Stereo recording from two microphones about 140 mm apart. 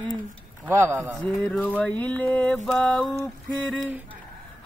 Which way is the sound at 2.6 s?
5° left (ahead or behind).